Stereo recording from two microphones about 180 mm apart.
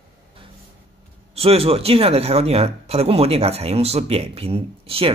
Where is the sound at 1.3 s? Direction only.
35° right (ahead or behind).